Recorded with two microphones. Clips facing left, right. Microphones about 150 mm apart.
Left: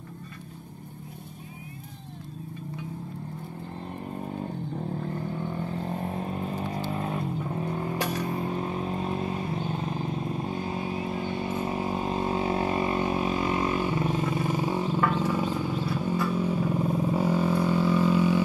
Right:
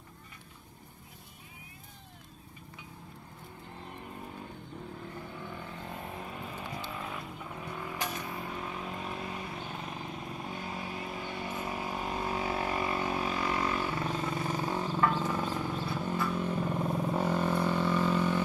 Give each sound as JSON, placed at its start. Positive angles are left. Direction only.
{"t": 4.0, "sound": "vehicle", "side_deg": 40}